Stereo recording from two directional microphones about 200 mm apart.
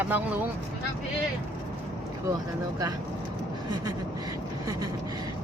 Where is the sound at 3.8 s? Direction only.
15° right (ahead or behind).